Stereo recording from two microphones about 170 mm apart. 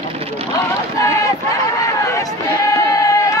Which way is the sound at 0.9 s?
20° left (ahead or behind).